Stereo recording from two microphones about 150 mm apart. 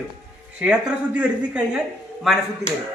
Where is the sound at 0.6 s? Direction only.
10° right (ahead or behind).